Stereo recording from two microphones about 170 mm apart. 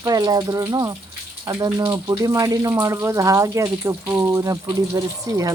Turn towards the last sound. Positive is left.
turn(degrees=-20)  # may be behind; listen again after turning